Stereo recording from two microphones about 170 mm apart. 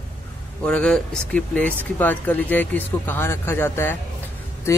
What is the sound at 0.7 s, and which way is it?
Speech, 5° left (ahead or behind).